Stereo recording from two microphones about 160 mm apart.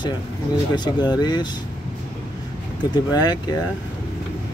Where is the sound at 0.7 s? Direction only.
25° left (ahead or behind).